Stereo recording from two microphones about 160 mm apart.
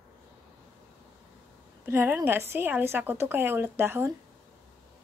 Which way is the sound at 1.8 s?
15° right (ahead or behind).